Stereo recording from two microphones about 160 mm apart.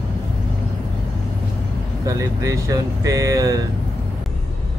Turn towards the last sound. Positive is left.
turn(degrees=-20)  # may be behind; listen again after turning